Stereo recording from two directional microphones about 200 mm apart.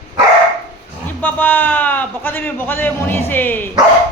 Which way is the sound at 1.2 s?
10° left (ahead or behind).